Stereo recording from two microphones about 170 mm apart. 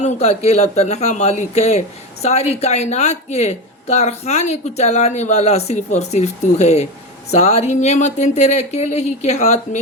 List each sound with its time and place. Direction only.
0.0 s speech: 40° left (ahead or behind)